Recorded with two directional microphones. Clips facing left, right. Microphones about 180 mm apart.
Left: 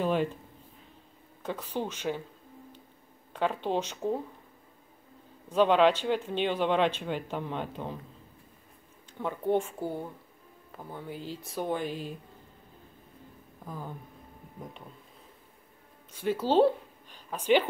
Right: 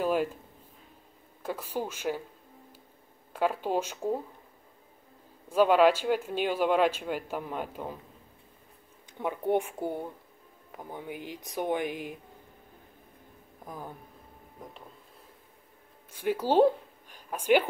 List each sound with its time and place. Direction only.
0.0 s speech: 5° right (ahead or behind)
1.4 s speech: 10° right (ahead or behind)
3.3 s speech: 10° right (ahead or behind)
5.5 s speech: 10° right (ahead or behind)
9.2 s speech: 15° right (ahead or behind)
13.7 s speech: 15° right (ahead or behind)
16.1 s a woman's voice: 10° right (ahead or behind)